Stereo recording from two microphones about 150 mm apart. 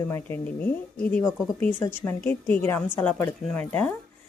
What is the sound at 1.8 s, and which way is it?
Speech, 15° left (ahead or behind).